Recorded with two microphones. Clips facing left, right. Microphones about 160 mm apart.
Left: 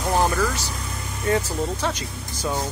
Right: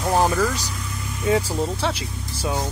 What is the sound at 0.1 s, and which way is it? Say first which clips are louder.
Vehicle: right 2 dB; 10° right (ahead or behind).